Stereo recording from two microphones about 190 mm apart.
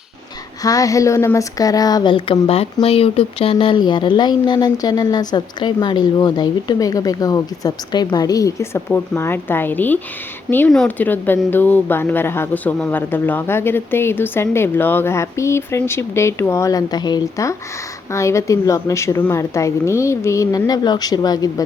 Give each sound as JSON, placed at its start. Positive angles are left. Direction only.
{"t": 0.6, "sound": "speech", "side_deg": 20}